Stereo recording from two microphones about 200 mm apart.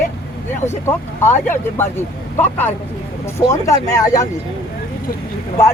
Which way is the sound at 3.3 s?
15° left (ahead or behind).